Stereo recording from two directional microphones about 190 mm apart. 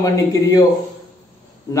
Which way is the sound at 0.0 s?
20° left (ahead or behind).